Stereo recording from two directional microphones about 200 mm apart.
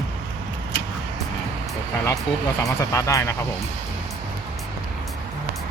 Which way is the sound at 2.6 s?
15° left (ahead or behind).